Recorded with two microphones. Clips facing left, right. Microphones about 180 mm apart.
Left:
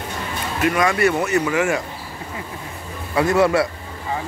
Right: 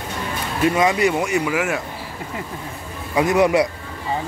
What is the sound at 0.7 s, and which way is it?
Speech, 20° right (ahead or behind).